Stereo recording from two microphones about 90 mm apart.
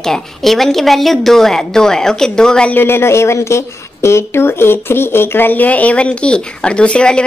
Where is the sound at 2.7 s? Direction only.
25° left (ahead or behind).